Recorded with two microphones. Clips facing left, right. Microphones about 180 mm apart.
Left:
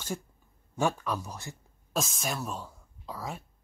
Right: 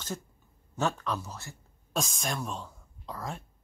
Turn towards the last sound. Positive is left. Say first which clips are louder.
# even
turn(degrees=5)  # may be behind; listen again after turning